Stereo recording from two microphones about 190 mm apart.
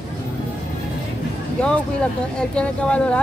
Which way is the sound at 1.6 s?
5° left (ahead or behind).